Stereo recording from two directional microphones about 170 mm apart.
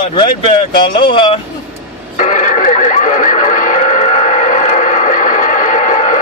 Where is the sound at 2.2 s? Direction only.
45° left (ahead or behind).